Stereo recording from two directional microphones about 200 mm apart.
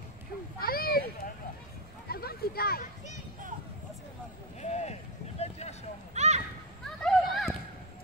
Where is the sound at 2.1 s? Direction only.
50° left (ahead or behind).